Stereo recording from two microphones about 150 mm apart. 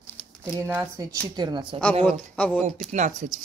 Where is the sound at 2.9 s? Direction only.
55° right (ahead or behind).